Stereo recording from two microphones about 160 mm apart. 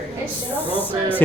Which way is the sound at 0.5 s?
10° left (ahead or behind).